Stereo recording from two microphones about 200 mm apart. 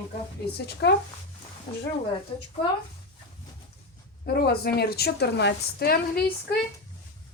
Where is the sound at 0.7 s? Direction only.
55° left (ahead or behind).